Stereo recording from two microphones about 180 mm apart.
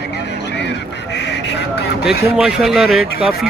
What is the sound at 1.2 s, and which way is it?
Speech, 70° left (ahead or behind).